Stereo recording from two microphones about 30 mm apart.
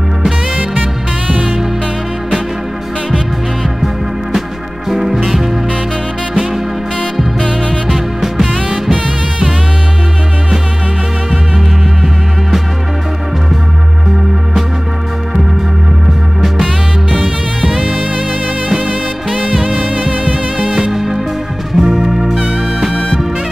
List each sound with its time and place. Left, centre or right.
1.2 s music: right
4.8 s music: centre
7.9 s music: centre
11.2 s music: centre
16.3 s music: centre
17.1 s music: right
20.1 s music: right
20.9 s music: centre